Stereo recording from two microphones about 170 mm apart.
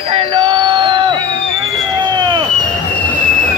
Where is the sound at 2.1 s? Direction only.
25° right (ahead or behind).